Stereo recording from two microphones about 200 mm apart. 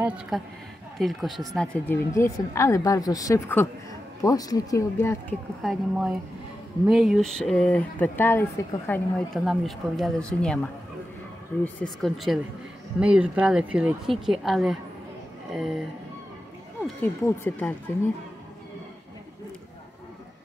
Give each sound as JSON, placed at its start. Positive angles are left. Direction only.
{"t": 0.3, "sound": "speech", "side_deg": 0}
{"t": 5.6, "sound": "speech", "side_deg": 0}
{"t": 16.8, "sound": "speech", "side_deg": 10}